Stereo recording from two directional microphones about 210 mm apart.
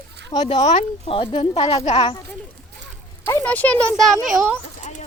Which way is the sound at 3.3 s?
10° left (ahead or behind).